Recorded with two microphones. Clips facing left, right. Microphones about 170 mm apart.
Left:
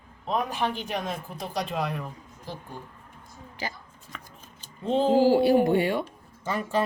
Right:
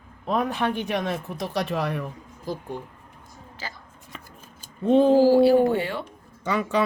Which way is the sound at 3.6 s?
15° left (ahead or behind).